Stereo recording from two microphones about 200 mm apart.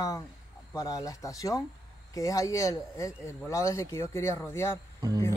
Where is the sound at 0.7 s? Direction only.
15° left (ahead or behind).